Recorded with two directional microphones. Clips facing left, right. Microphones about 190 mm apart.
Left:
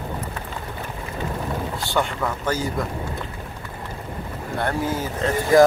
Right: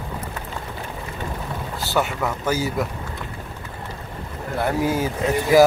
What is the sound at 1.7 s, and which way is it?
Speech, 5° right (ahead or behind).